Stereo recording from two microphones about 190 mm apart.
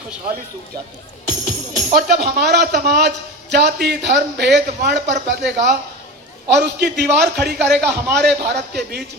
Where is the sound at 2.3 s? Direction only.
60° right (ahead or behind).